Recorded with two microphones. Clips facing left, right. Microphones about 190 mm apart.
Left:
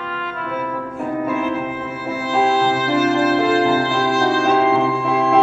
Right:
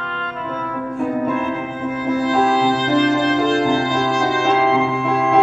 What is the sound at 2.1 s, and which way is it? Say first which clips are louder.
Music: right 1 dB; 5° left (ahead or behind).